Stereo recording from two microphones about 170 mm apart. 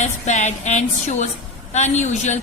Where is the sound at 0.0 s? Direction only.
45° left (ahead or behind).